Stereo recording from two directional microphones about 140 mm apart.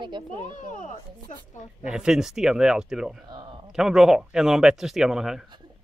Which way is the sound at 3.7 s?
5° right (ahead or behind).